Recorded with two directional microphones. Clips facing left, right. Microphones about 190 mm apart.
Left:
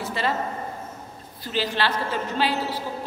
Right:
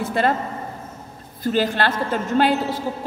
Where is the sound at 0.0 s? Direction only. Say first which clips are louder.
Right 6 dB; 50° right (ahead or behind).